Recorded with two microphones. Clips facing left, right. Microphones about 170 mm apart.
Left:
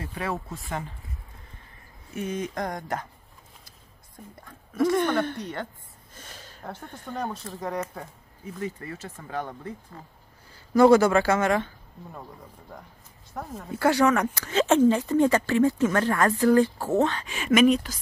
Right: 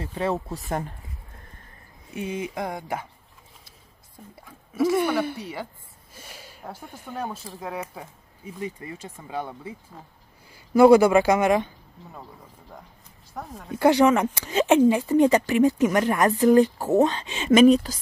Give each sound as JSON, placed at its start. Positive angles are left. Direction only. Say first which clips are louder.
{"t": 0.0, "sound": "speech", "louder": "right 5 dB", "side_deg": -30}
{"t": 0.7, "sound": "speech", "louder": "right 4 dB", "side_deg": -45}
{"t": 2.0, "sound": "speech", "louder": "even", "side_deg": -15}
{"t": 4.4, "sound": "speech", "louder": "right 1 dB", "side_deg": -5}
{"t": 13.3, "sound": "speech", "louder": "left 1 dB", "side_deg": 0}
{"t": 13.7, "sound": "speech", "louder": "right 3 dB", "side_deg": -20}